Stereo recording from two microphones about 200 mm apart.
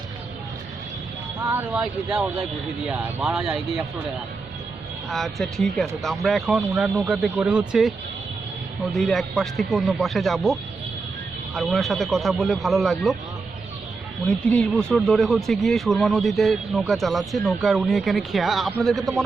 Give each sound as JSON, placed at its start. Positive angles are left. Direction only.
{"t": 1.5, "sound": "speech", "side_deg": -10}
{"t": 5.0, "sound": "speech", "side_deg": 0}
{"t": 9.0, "sound": "speech", "side_deg": 0}
{"t": 14.3, "sound": "speech", "side_deg": 5}